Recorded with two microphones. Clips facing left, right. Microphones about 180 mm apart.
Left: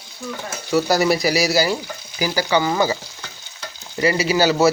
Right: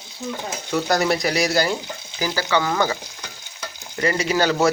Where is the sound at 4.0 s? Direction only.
5° left (ahead or behind).